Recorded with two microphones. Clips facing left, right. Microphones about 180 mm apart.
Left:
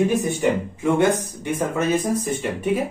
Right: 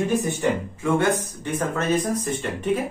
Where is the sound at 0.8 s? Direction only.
15° left (ahead or behind).